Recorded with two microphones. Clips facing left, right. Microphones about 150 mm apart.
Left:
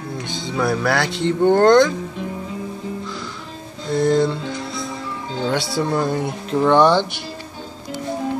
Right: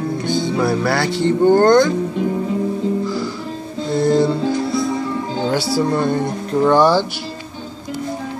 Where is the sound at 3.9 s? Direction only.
Centre (ahead or behind).